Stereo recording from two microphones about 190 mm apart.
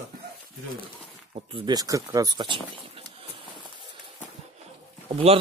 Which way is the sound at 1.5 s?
20° right (ahead or behind).